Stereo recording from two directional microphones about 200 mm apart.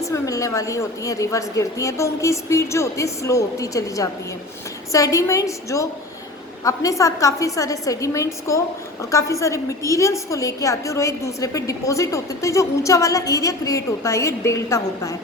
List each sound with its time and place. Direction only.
0.0 s a woman's voice: 15° left (ahead or behind)